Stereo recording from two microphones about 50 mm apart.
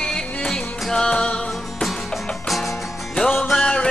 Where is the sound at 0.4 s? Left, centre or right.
Centre.